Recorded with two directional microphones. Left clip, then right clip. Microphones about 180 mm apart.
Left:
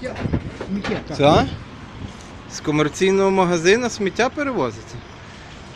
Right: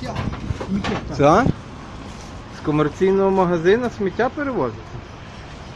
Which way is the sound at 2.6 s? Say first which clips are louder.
Even; 15° left (ahead or behind).